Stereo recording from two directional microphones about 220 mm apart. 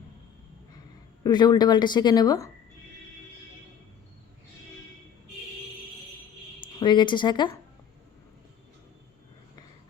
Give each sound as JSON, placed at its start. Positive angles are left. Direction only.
{"t": 1.2, "sound": "speech", "side_deg": 20}
{"t": 6.6, "sound": "speech", "side_deg": 20}